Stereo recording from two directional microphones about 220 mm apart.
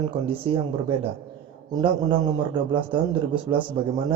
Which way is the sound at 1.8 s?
20° right (ahead or behind).